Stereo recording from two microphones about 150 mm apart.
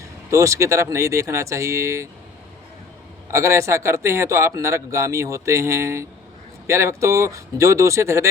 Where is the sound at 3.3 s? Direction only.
20° right (ahead or behind).